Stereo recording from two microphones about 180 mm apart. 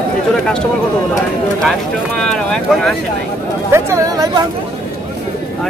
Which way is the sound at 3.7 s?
20° right (ahead or behind).